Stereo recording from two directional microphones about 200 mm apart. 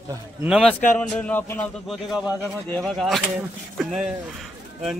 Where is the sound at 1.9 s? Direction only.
Centre (ahead or behind).